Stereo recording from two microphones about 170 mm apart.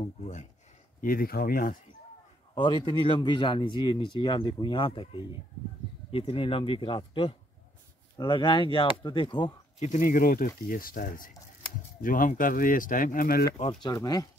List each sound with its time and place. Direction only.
0.0 s speech: 40° left (ahead or behind)
1.0 s speech: 60° left (ahead or behind)
2.5 s speech: 25° left (ahead or behind)
9.8 s speech: 50° left (ahead or behind)
13.8 s speech: 25° left (ahead or behind)